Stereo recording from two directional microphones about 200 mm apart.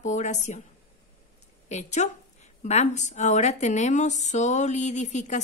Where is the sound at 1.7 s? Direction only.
35° left (ahead or behind).